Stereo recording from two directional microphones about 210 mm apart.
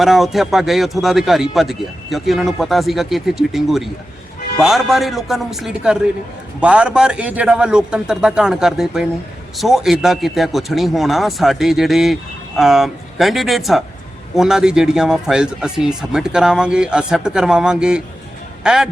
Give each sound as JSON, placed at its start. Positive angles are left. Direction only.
{"t": 0.0, "sound": "a man's voice", "side_deg": 0}